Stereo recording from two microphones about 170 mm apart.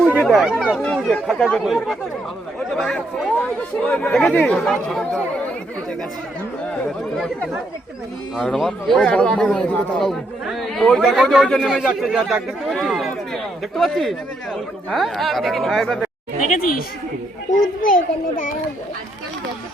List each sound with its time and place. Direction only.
0.1 s chatter: 5° right (ahead or behind)
0.6 s a man's voice: centre (ahead or behind)
8.4 s a man's voice: centre (ahead or behind)
16.5 s speech: 55° left (ahead or behind)